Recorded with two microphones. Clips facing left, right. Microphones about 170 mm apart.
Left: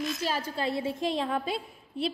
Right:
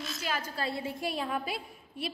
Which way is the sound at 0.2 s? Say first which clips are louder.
Left 4 dB; 30° left (ahead or behind).